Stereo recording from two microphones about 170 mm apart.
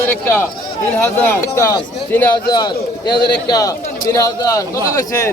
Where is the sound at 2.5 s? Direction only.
25° left (ahead or behind).